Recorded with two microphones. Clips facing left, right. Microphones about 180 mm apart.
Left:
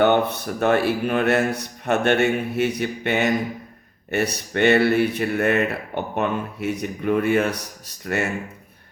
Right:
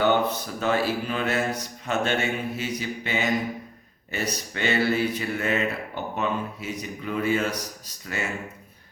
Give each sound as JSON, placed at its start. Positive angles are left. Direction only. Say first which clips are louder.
{"t": 0.0, "sound": "speech", "louder": "left 4 dB", "side_deg": 60}